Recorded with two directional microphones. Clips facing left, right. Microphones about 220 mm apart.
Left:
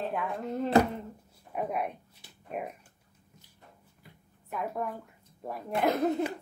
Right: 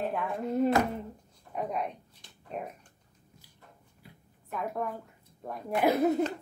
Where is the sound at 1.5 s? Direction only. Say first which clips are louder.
Left 1 dB; 5° left (ahead or behind).